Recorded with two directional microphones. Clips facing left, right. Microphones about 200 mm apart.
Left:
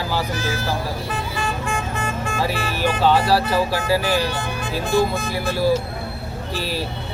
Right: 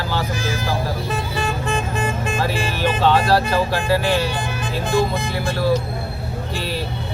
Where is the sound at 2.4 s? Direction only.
5° left (ahead or behind).